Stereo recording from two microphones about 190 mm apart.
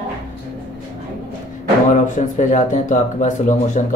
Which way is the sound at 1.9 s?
40° left (ahead or behind).